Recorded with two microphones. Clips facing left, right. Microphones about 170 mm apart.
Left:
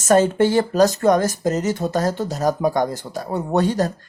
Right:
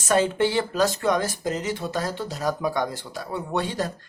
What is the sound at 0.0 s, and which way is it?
Speech, 45° left (ahead or behind).